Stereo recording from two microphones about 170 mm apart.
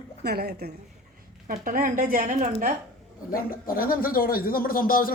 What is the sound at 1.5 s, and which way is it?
Speech, 55° right (ahead or behind).